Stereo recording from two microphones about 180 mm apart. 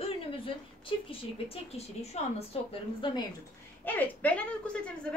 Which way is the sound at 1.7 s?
35° left (ahead or behind).